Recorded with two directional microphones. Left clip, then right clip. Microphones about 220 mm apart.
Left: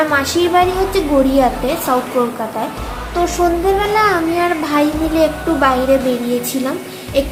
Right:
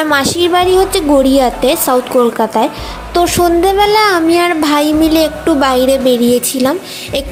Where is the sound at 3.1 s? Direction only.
35° right (ahead or behind).